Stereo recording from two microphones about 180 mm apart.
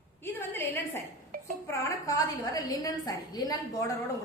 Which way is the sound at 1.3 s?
50° right (ahead or behind).